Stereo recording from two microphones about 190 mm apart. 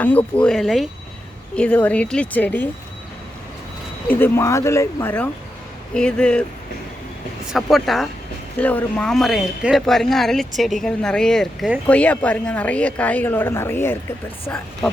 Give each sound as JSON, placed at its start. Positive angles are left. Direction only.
{"t": 0.0, "sound": "speech", "side_deg": 10}
{"t": 4.1, "sound": "speech", "side_deg": 10}
{"t": 7.5, "sound": "speech", "side_deg": 0}